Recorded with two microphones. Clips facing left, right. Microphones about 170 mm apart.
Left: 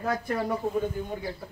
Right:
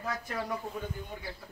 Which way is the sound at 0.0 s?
55° left (ahead or behind).